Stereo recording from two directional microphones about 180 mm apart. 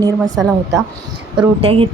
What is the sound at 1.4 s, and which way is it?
Speech, 30° right (ahead or behind).